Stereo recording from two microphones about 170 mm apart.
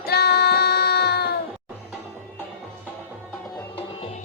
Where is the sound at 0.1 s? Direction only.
70° left (ahead or behind).